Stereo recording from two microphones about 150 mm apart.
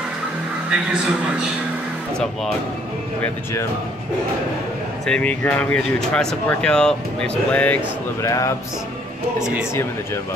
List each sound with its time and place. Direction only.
5.0 s speech: 5° left (ahead or behind)
8.2 s speech: 20° left (ahead or behind)
9.4 s speech: 5° right (ahead or behind)